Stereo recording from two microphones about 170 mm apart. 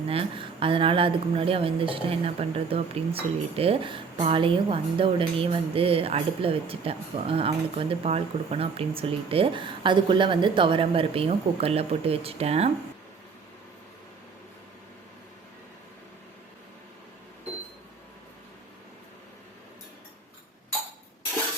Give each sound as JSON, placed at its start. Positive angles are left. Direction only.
{"t": 0.1, "sound": "a woman's voice", "side_deg": -30}